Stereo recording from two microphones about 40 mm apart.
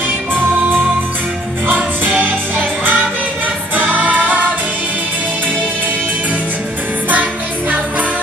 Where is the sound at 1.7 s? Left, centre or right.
Right.